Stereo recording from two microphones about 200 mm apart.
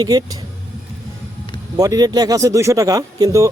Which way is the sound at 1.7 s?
20° right (ahead or behind).